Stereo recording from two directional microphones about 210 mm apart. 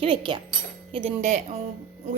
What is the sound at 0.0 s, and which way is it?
A woman's voice, 25° right (ahead or behind).